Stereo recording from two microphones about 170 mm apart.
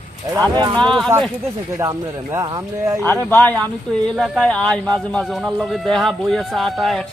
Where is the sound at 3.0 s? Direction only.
10° left (ahead or behind).